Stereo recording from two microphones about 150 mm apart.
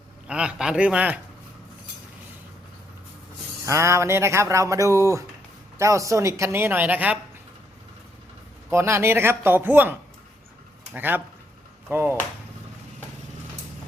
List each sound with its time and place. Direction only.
0.3 s speech: 5° right (ahead or behind)
3.7 s speech: 20° right (ahead or behind)
8.7 s speech: 15° right (ahead or behind)